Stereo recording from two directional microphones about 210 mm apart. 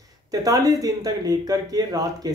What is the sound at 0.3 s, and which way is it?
Speech, 15° right (ahead or behind).